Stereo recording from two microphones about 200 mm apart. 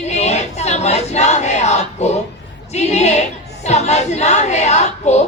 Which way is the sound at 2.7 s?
35° left (ahead or behind).